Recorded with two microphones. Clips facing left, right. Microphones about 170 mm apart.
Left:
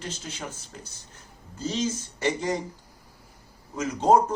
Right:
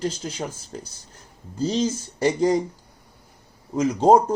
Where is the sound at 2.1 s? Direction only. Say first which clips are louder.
Right 8 dB; 35° right (ahead or behind).